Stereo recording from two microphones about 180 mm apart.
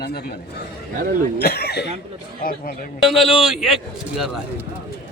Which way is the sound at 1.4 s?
60° left (ahead or behind).